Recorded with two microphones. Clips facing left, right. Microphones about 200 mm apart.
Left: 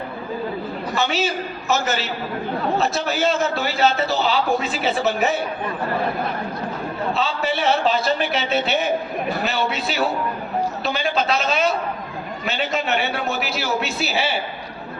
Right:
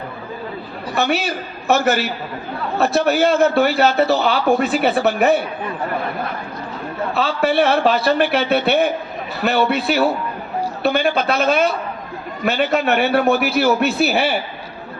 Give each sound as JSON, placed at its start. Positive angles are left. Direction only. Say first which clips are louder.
{"t": 0.9, "sound": "a man's voice", "louder": "right 3 dB", "side_deg": -60}
{"t": 7.1, "sound": "a man's voice", "louder": "right 6 dB", "side_deg": -60}